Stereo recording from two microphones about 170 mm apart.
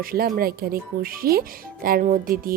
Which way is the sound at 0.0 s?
60° right (ahead or behind).